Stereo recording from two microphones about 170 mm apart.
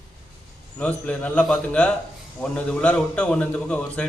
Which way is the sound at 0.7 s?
5° left (ahead or behind).